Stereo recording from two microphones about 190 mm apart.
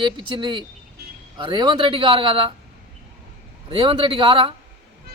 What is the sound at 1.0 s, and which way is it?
Vehicle, 55° right (ahead or behind).